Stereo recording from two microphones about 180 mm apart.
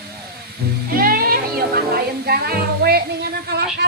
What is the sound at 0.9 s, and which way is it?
Music, 55° right (ahead or behind).